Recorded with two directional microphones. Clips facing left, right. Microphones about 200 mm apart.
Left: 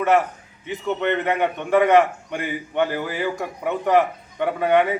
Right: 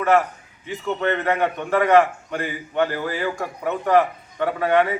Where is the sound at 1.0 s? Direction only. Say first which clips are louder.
Right 1 dB; 15° left (ahead or behind).